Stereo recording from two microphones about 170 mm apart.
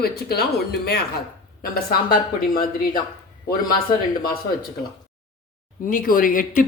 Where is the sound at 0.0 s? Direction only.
65° left (ahead or behind).